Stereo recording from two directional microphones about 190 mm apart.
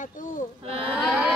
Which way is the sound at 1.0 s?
Centre (ahead or behind).